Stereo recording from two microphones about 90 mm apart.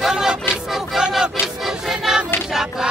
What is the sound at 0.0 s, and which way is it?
Vehicle, 5° right (ahead or behind).